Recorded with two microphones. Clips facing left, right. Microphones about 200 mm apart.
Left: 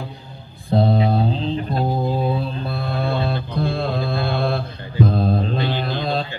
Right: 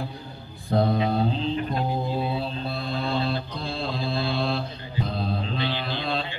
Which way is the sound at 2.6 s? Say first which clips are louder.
Left 4 dB; 55° left (ahead or behind).